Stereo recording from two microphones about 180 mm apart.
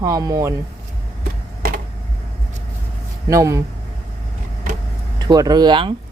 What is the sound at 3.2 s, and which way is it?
Speech, 15° right (ahead or behind).